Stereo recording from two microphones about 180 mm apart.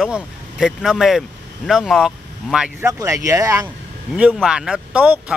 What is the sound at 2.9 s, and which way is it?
Speech, 20° right (ahead or behind).